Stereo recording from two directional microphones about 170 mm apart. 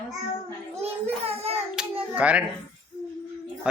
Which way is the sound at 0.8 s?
35° right (ahead or behind).